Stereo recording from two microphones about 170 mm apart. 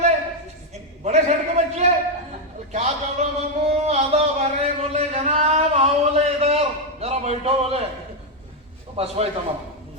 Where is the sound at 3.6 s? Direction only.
40° right (ahead or behind).